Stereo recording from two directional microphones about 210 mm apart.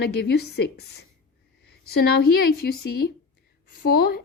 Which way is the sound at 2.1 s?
45° left (ahead or behind).